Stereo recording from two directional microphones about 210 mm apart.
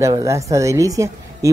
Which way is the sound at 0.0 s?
15° right (ahead or behind).